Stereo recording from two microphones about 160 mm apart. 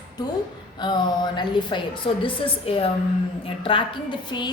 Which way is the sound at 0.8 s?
25° left (ahead or behind).